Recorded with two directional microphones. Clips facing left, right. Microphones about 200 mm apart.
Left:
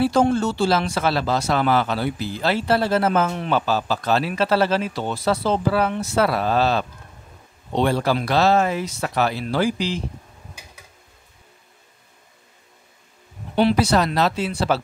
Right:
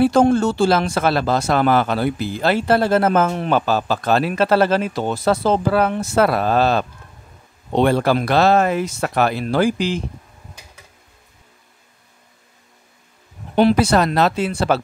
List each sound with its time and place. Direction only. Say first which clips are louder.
0.0 s speech: right 4 dB; 50° right (ahead or behind)
13.6 s speech: right 3 dB; 50° right (ahead or behind)